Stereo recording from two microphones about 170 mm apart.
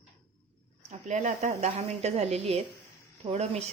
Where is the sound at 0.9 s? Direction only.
45° right (ahead or behind).